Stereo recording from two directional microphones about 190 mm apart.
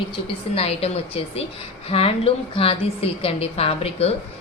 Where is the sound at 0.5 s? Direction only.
30° left (ahead or behind).